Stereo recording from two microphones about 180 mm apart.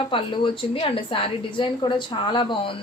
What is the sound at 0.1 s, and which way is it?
A woman's voice, 25° left (ahead or behind).